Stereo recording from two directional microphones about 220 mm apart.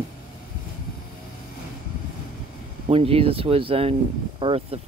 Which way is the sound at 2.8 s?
25° right (ahead or behind).